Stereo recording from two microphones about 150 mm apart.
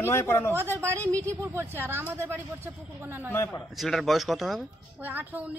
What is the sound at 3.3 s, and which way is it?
Speech, 15° left (ahead or behind).